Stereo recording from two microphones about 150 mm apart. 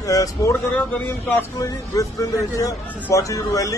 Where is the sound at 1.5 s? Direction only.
20° left (ahead or behind).